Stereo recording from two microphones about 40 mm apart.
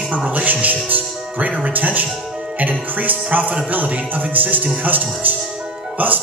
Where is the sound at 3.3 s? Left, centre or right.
Right.